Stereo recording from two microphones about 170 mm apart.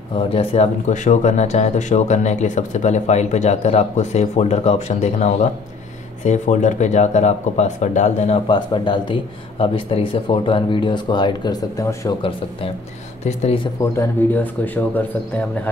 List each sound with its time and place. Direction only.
0.3 s speech: 35° left (ahead or behind)
8.5 s speech: 25° left (ahead or behind)
13.2 s speech: 40° left (ahead or behind)
13.9 s speech: 10° left (ahead or behind)